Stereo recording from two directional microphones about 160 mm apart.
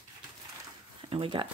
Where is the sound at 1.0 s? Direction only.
35° right (ahead or behind).